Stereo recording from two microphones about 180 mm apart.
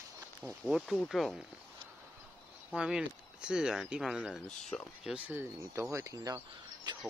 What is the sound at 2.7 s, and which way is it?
Speech, 5° right (ahead or behind).